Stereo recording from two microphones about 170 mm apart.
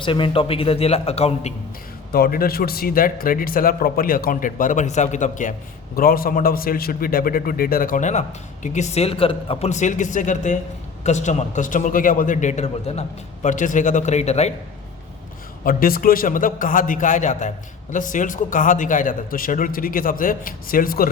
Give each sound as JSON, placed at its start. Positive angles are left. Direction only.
{"t": 0.0, "sound": "a man's voice", "side_deg": 30}
{"t": 2.1, "sound": "a man's voice", "side_deg": 60}
{"t": 15.6, "sound": "a man's voice", "side_deg": 60}